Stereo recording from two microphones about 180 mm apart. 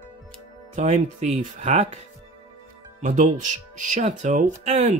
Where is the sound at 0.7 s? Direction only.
40° right (ahead or behind).